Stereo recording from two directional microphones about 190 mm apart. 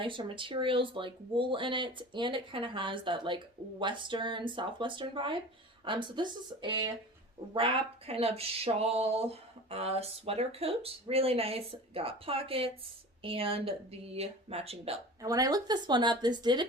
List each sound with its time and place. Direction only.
0.0 s speech: 25° right (ahead or behind)
15.2 s speech: 20° right (ahead or behind)